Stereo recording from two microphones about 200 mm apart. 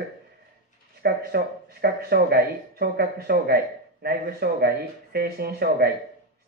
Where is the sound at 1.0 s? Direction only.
55° right (ahead or behind).